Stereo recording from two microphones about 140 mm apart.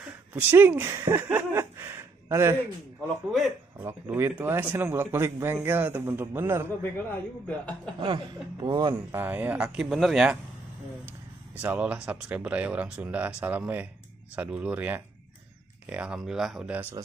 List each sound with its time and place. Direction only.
0.3 s a man's voice: 15° right (ahead or behind)
3.3 s speech: centre (ahead or behind)
3.8 s a man's voice: 15° right (ahead or behind)
6.8 s a woman's voice: 10° left (ahead or behind)
8.0 s speech: 35° right (ahead or behind)
9.1 s speech: 15° right (ahead or behind)
11.6 s a man's voice: 10° right (ahead or behind)